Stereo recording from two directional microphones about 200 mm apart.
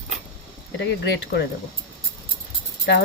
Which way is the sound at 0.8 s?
65° left (ahead or behind).